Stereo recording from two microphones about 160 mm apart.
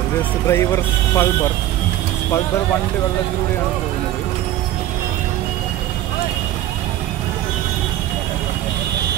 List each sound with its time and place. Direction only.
0.5 s speech: 15° left (ahead or behind)